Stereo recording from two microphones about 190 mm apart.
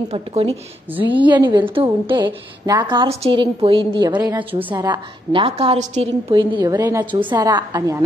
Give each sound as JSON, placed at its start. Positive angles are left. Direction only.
{"t": 0.1, "sound": "a woman's voice", "side_deg": -35}
{"t": 1.3, "sound": "a woman's voice", "side_deg": -25}
{"t": 4.7, "sound": "a woman's voice", "side_deg": -20}
{"t": 6.3, "sound": "a woman's voice", "side_deg": -20}